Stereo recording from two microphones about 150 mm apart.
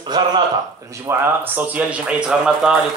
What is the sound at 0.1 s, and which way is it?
Speech, 25° right (ahead or behind).